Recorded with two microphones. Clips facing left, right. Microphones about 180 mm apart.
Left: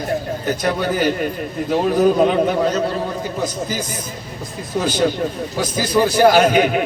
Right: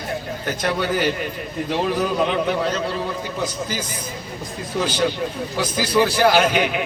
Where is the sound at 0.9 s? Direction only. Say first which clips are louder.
Left 3 dB; 45° left (ahead or behind).